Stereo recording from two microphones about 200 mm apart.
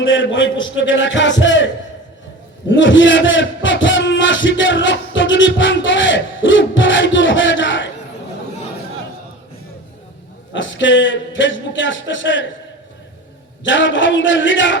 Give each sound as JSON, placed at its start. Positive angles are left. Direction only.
{"t": 0.0, "sound": "a man's voice", "side_deg": 65}
{"t": 10.5, "sound": "a man's voice", "side_deg": 70}
{"t": 13.7, "sound": "a man's voice", "side_deg": 70}